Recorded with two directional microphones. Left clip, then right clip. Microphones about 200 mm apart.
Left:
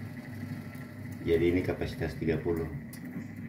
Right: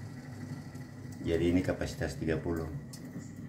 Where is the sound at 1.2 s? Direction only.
15° right (ahead or behind).